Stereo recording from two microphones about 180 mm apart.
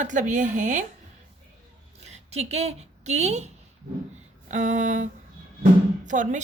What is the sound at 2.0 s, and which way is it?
A woman's voice, 35° right (ahead or behind).